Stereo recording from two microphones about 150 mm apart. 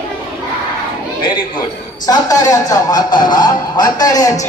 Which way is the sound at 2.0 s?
25° left (ahead or behind).